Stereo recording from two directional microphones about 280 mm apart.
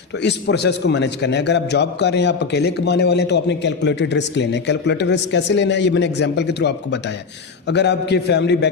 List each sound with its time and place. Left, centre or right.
0.2 s a man's voice: left